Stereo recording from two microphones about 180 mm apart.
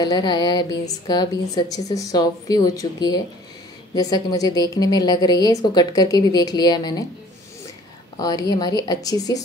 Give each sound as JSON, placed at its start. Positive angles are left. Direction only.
{"t": 0.0, "sound": "a woman's voice", "side_deg": 25}
{"t": 8.2, "sound": "a woman's voice", "side_deg": 20}